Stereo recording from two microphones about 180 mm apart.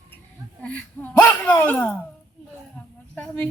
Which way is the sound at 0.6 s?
5° left (ahead or behind).